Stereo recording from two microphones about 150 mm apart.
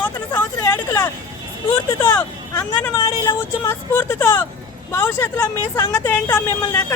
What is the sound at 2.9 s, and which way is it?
Speech, 20° left (ahead or behind).